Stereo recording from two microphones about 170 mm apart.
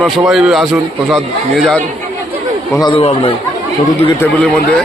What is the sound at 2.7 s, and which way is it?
Speech, 25° left (ahead or behind).